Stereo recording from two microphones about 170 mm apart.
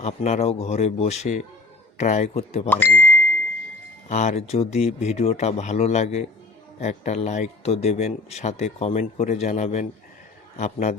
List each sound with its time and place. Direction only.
0.0 s speech: 40° left (ahead or behind)
2.6 s speech: 10° left (ahead or behind)
4.1 s a man's voice: 40° left (ahead or behind)